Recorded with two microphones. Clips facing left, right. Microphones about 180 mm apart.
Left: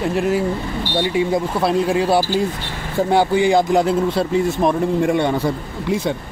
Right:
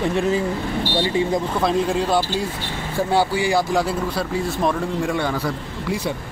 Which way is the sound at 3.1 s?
20° left (ahead or behind).